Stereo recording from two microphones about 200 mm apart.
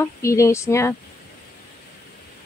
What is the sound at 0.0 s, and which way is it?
Speech, 15° left (ahead or behind).